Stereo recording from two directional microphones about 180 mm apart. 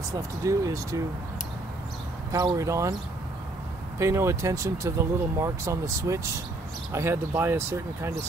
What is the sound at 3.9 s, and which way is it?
Speech, 15° right (ahead or behind).